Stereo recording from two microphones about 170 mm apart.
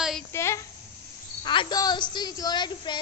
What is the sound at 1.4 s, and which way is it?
A woman's voice, 25° left (ahead or behind).